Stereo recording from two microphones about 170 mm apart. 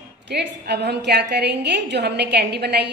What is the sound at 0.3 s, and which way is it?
A woman's voice, 75° right (ahead or behind).